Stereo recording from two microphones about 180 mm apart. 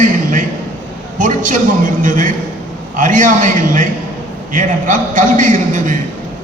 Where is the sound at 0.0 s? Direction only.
45° right (ahead or behind).